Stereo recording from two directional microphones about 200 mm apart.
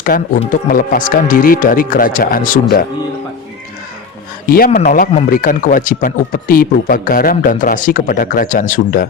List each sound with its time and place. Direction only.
0.1 s speech: 45° left (ahead or behind)
4.4 s speech: 45° left (ahead or behind)